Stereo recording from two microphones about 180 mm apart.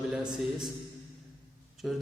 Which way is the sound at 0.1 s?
5° right (ahead or behind).